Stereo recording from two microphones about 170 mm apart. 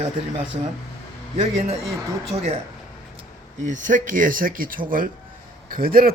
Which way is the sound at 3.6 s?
50° right (ahead or behind).